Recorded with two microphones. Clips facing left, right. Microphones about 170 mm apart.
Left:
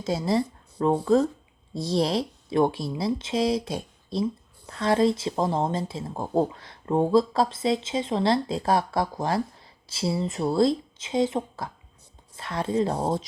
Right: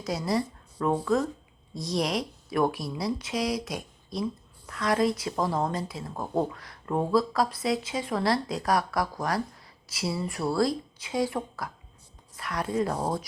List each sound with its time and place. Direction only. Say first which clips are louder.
0.0 s speech: left 3 dB; 25° left (ahead or behind)